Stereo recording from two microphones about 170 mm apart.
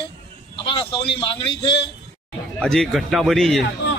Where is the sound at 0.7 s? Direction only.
35° left (ahead or behind).